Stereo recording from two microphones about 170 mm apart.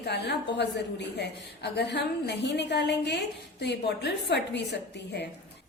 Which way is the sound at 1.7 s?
80° left.